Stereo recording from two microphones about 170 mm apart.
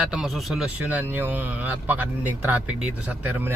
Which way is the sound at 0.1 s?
Centre (ahead or behind).